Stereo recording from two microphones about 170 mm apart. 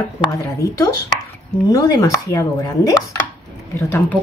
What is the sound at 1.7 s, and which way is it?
Speech, 20° left (ahead or behind).